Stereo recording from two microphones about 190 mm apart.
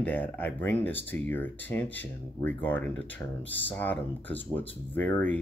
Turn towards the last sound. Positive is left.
turn(degrees=10)  # may be behind; listen again after turning